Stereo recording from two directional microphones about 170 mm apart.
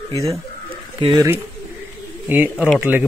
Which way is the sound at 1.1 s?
15° right (ahead or behind).